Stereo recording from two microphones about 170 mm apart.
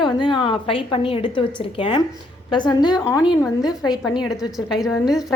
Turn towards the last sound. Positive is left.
turn(degrees=0)  # may be behind; listen again after turning